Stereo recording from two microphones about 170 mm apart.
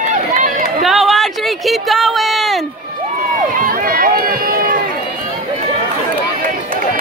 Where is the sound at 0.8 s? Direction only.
Centre (ahead or behind).